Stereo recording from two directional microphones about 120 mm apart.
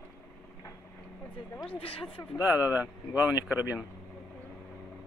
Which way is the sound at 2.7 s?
15° right (ahead or behind).